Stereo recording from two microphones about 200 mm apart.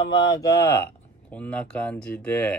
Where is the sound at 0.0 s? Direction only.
20° left (ahead or behind).